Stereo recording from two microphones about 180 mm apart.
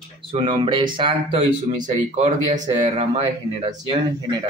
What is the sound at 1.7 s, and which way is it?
Speech, 45° right (ahead or behind).